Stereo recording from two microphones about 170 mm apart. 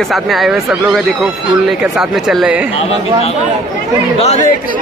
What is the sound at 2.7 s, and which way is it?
Speech, 35° left (ahead or behind).